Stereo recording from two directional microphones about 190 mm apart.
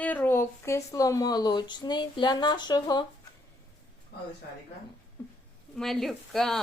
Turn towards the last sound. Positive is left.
turn(degrees=0)  # may be behind; listen again after turning